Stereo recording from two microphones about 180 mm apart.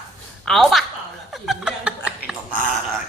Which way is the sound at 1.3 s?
Centre (ahead or behind).